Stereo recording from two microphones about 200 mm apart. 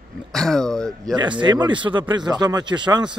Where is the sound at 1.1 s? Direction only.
25° right (ahead or behind).